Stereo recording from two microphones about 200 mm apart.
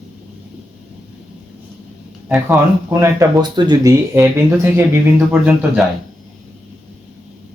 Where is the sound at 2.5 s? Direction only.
15° right (ahead or behind).